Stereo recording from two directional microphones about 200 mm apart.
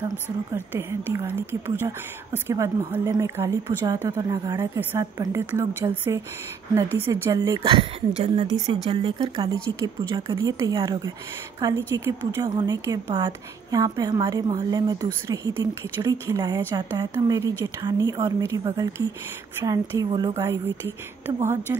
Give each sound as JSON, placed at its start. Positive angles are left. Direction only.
{"t": 0.6, "sound": "speech", "side_deg": -15}
{"t": 6.7, "sound": "a woman's voice", "side_deg": -15}